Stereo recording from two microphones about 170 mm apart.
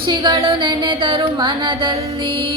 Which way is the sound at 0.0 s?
25° right (ahead or behind).